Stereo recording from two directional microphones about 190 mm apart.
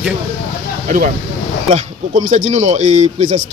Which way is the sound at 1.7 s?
40° right (ahead or behind).